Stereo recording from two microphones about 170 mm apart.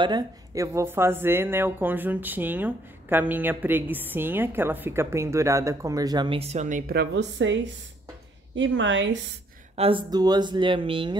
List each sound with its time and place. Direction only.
0.0 s a woman's voice: 20° right (ahead or behind); by 6.8 s 40° right (ahead or behind)
6.9 s a woman's voice: 80° right
9.8 s speech: 30° right (ahead or behind)